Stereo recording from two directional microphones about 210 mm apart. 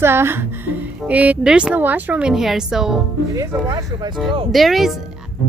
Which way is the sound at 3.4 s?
15° right (ahead or behind).